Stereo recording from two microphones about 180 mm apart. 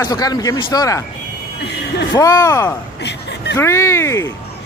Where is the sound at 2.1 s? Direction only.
20° left (ahead or behind).